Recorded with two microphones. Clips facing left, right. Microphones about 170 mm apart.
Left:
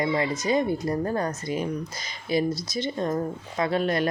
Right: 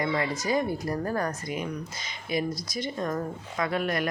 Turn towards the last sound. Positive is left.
turn(degrees=30)  # may be behind; listen again after turning